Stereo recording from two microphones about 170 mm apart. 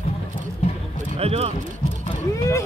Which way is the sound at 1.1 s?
40° right (ahead or behind).